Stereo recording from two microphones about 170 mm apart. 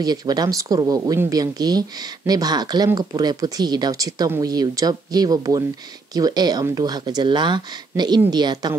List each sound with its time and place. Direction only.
0.0 s speech: 25° right (ahead or behind)